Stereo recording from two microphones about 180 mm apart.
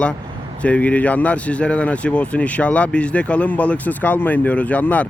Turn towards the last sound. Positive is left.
turn(degrees=10)  # may be behind; listen again after turning